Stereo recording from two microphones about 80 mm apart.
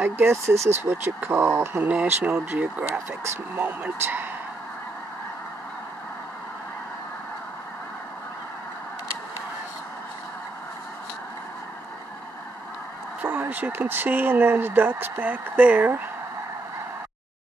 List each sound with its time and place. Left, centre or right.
0.0 s speech: right
1.2 s speech: right
1.8 s speech: centre
13.2 s speech: right